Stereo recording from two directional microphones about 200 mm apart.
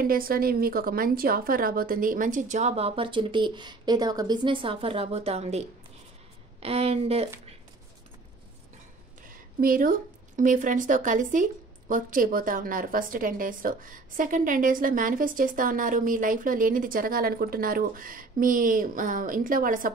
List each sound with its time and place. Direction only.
0.0 s a woman's voice: 45° right (ahead or behind); by 7.2 s 30° right (ahead or behind)
9.3 s a woman's voice: 45° right (ahead or behind)